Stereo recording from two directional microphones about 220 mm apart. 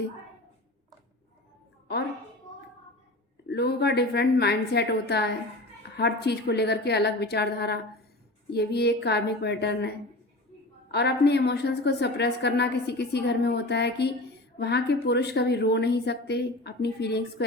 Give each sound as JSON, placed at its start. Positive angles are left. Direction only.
{"t": 3.4, "sound": "a woman's voice", "side_deg": 50}
{"t": 10.9, "sound": "a woman's voice", "side_deg": 50}